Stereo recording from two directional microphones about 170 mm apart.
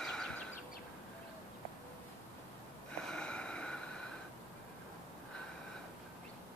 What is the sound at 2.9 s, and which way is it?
Snort, 5° left (ahead or behind).